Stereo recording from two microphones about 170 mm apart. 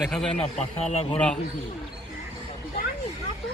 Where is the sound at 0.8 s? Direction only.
35° left (ahead or behind).